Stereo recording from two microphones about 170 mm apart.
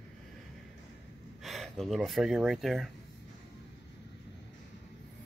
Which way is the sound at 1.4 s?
Centre (ahead or behind).